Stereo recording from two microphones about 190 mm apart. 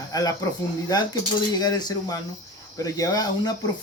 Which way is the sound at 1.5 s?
20° left (ahead or behind).